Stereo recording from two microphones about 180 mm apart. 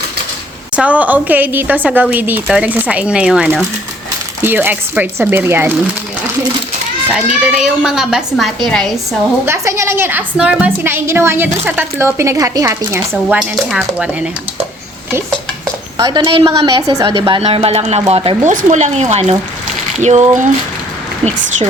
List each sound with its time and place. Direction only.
0.8 s a woman's voice: 10° right (ahead or behind)
7.1 s a woman's voice: 5° right (ahead or behind)
9.5 s a woman's voice: 15° right (ahead or behind)
13.2 s a woman's voice: 5° right (ahead or behind)
15.6 s a sound: 20° right (ahead or behind)
16.6 s a woman's voice: 25° right (ahead or behind); by 20.5 s 40° right (ahead or behind)